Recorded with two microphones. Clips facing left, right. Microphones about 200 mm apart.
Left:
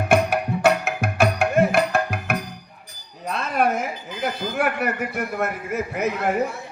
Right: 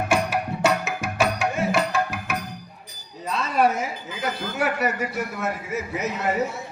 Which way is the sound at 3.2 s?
55° left (ahead or behind).